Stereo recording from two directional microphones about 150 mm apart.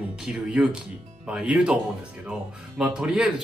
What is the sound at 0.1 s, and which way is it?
Speech, 5° right (ahead or behind).